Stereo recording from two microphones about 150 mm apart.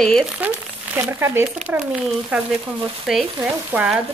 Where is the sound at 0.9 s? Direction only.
15° right (ahead or behind).